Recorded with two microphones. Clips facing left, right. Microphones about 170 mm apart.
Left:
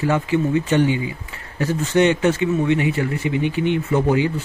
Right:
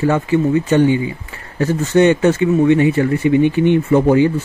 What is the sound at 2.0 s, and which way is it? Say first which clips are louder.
A man's voice: right 4 dB; 45° right (ahead or behind).